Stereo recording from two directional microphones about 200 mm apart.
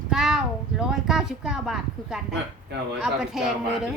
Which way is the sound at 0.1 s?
Centre (ahead or behind).